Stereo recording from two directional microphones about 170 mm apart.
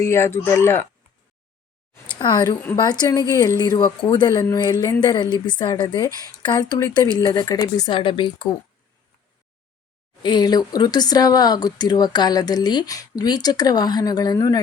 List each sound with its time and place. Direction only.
0.0 s speech: 15° left (ahead or behind)
2.0 s speech: 25° left (ahead or behind)
10.2 s speech: 25° left (ahead or behind)